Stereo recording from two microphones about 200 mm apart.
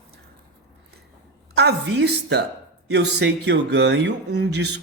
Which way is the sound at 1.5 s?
55° right (ahead or behind).